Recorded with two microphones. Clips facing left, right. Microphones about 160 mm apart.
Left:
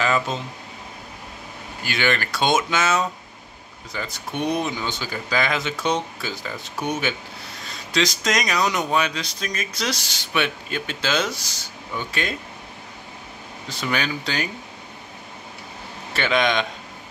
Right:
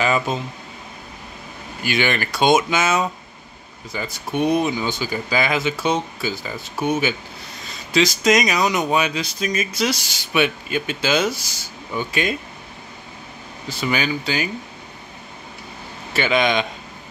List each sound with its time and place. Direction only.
0.0 s a sound: 10° right (ahead or behind)
1.9 s speech: 15° right (ahead or behind)
13.7 s speech: 5° right (ahead or behind)
16.1 s speech: 5° right (ahead or behind)